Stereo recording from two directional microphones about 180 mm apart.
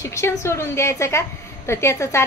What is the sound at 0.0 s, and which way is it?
A woman's voice, 15° left (ahead or behind).